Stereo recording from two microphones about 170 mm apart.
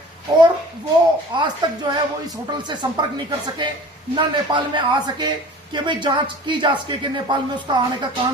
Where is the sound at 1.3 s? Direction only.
25° right (ahead or behind).